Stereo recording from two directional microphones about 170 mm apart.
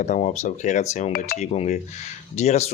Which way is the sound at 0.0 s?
45° left (ahead or behind).